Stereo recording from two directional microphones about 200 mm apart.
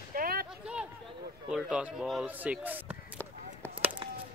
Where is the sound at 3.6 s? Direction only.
10° left (ahead or behind).